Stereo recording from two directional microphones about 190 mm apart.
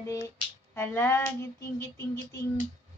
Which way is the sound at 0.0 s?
15° left (ahead or behind).